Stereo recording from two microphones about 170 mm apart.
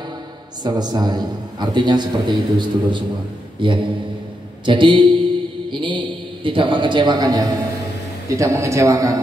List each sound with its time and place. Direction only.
0.7 s a man's voice: 25° right (ahead or behind)